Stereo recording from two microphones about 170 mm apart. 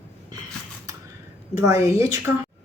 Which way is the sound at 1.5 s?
20° right (ahead or behind).